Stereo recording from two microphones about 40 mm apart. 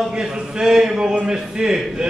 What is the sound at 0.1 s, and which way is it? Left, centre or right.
Speech, centre.